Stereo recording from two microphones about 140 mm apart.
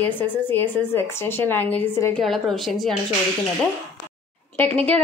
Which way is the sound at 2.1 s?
Centre (ahead or behind).